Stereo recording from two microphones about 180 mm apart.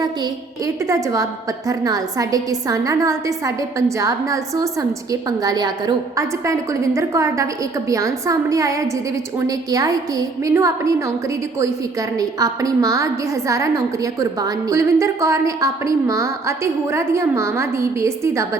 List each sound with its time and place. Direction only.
0.0 s a woman's voice: 20° right (ahead or behind)